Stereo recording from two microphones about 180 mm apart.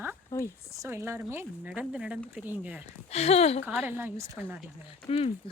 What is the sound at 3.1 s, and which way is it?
Speech, 35° left (ahead or behind).